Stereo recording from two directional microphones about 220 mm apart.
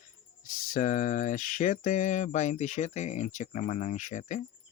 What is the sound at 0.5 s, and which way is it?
Speech, 40° left (ahead or behind).